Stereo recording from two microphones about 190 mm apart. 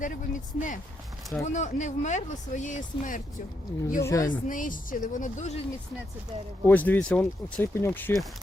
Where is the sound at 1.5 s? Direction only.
40° left (ahead or behind).